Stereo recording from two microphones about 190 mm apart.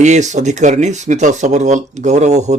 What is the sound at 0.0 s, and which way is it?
Speech, 40° right (ahead or behind).